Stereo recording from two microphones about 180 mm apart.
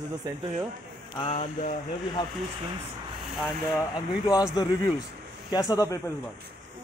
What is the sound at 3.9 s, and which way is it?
Speech, 20° left (ahead or behind).